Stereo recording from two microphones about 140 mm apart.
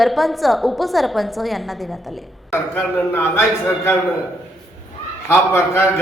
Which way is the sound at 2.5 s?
15° left (ahead or behind).